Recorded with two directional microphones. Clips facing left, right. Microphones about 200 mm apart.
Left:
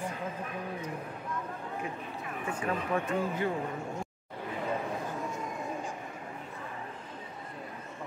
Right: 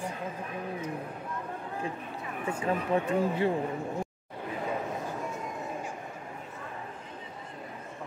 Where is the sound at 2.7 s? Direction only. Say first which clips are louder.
Right 4 dB; 25° right (ahead or behind).